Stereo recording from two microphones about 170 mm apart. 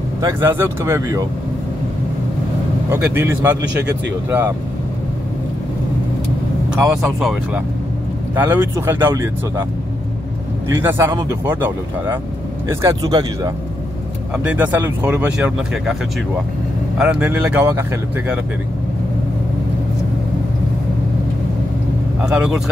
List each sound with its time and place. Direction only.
0.2 s speech: 15° right (ahead or behind)
2.9 s speech: 15° right (ahead or behind)
7.2 s speech: centre (ahead or behind)
8.4 s speech: 10° right (ahead or behind)
10.7 s speech: 15° right (ahead or behind)
12.8 s speech: 25° right (ahead or behind)
14.3 s speech: 10° right (ahead or behind)
17.0 s speech: 10° right (ahead or behind)
22.2 s speech: 5° right (ahead or behind)